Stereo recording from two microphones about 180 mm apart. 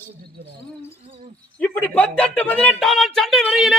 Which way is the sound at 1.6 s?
10° left (ahead or behind).